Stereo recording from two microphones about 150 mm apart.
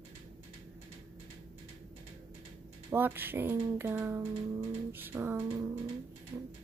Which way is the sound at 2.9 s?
15° right (ahead or behind).